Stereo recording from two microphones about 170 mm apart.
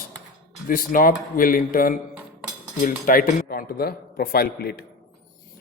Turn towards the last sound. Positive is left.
turn(degrees=70)  # may be behind; listen again after turning